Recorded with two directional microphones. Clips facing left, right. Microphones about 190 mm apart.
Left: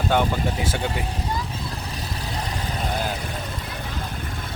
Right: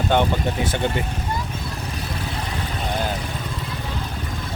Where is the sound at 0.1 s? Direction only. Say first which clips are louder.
Right 2 dB; 5° left (ahead or behind).